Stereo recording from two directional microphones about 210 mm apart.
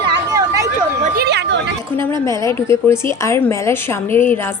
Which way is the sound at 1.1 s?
50° right (ahead or behind).